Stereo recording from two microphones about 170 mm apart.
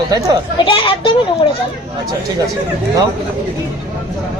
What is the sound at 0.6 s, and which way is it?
Speech, 30° left (ahead or behind).